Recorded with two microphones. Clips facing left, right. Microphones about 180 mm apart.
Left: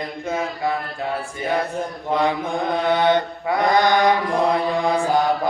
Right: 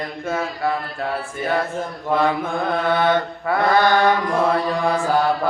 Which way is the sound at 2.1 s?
20° left (ahead or behind).